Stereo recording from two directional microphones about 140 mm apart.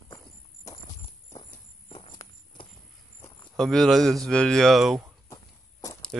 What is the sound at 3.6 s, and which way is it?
A man's voice, 5° left (ahead or behind).